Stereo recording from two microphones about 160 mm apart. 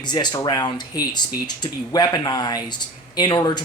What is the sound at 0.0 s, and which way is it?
Speech, 25° left (ahead or behind).